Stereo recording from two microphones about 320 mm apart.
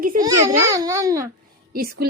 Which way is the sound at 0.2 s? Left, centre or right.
Centre.